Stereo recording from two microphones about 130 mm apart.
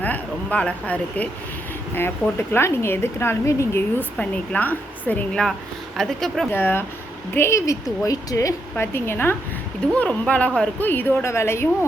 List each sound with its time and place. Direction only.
0.0 s a woman's voice: 10° left (ahead or behind)
6.5 s a woman's voice: 15° left (ahead or behind)